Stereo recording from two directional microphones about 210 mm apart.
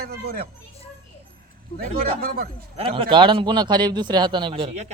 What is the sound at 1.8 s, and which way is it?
Speech, 45° right (ahead or behind).